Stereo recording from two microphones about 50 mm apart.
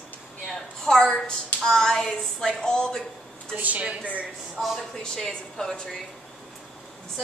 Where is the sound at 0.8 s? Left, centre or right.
Centre.